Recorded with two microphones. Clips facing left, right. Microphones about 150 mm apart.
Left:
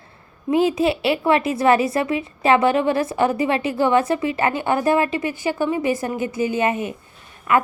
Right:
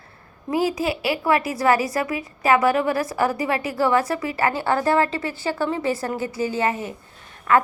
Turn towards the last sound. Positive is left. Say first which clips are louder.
# even
turn(degrees=10)  # may be behind; listen again after turning